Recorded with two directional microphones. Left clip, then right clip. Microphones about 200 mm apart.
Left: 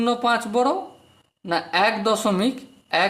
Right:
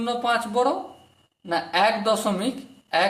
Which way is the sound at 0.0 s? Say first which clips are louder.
Left 3 dB; 40° left (ahead or behind).